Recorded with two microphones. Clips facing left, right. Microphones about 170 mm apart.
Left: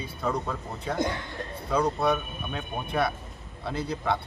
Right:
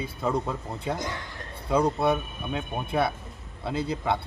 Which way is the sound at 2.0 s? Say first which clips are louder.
Right 1 dB; 25° right (ahead or behind).